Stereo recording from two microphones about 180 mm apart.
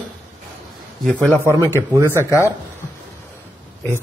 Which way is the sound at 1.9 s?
15° right (ahead or behind).